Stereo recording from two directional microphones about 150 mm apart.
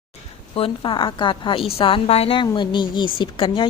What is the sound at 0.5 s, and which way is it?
A woman's voice, 40° left (ahead or behind).